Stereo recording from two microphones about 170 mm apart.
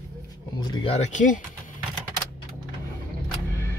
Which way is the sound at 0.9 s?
45° left (ahead or behind).